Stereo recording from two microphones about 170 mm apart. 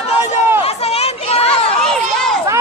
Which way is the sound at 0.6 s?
35° left (ahead or behind).